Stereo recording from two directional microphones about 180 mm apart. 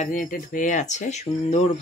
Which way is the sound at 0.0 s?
45° left (ahead or behind).